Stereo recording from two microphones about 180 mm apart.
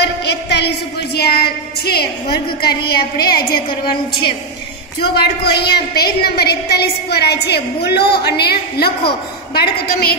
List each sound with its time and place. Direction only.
0.0 s a sound: 70° left (ahead or behind)
2.3 s a woman's voice: 60° left (ahead or behind)
3.2 s a woman's voice: 25° left (ahead or behind)
5.0 s a woman's voice: 65° left (ahead or behind)